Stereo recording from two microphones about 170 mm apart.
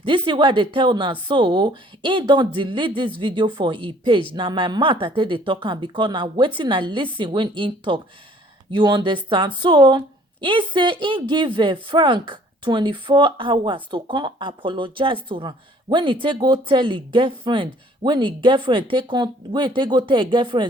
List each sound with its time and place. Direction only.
0.0 s speech: 30° right (ahead or behind)